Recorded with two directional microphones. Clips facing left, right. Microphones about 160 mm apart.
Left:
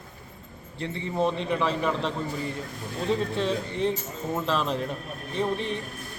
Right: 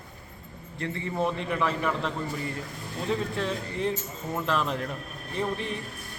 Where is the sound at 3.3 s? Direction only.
25° left (ahead or behind).